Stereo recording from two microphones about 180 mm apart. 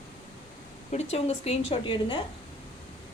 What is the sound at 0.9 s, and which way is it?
Speech, 35° left (ahead or behind).